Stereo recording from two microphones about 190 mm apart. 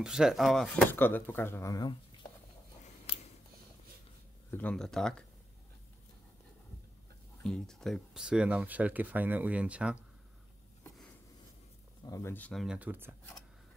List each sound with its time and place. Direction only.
0.0 s speech: 5° right (ahead or behind); by 2.0 s 20° left (ahead or behind)
4.5 s speech: 5° left (ahead or behind)
7.4 s speech: 5° left (ahead or behind)
12.1 s speech: 15° left (ahead or behind)
12.6 s speech: 10° right (ahead or behind)